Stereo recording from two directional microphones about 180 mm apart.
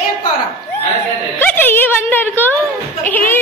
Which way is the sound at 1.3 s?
10° left (ahead or behind).